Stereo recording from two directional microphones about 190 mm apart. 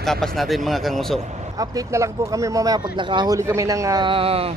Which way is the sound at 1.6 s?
20° right (ahead or behind).